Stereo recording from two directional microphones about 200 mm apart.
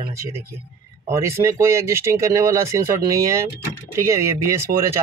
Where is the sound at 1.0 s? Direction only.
15° right (ahead or behind).